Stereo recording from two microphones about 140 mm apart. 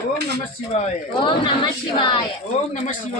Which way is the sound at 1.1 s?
35° left (ahead or behind).